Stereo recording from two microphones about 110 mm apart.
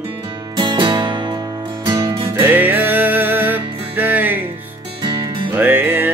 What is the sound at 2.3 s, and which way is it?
Music, 15° right (ahead or behind).